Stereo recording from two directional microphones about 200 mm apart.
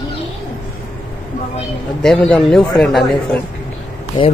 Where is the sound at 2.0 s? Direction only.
5° left (ahead or behind).